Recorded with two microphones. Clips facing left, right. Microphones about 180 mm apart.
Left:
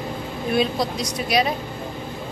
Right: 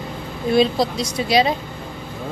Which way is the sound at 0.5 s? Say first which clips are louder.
Right 5 dB; 30° right (ahead or behind).